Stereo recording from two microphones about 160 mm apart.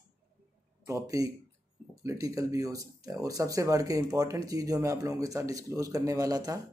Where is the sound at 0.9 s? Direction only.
20° right (ahead or behind).